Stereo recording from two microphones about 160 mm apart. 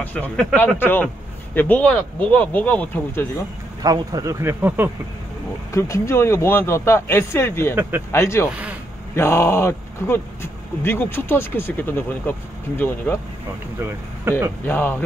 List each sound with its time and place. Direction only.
0.0 s speech: 10° left (ahead or behind)
3.8 s speech: 25° right (ahead or behind)
5.7 s speech: 20° left (ahead or behind)
8.5 s speech: 10° right (ahead or behind)
9.1 s speech: 15° left (ahead or behind)
13.7 s speech: 15° right (ahead or behind)
14.6 s speech: 10° left (ahead or behind)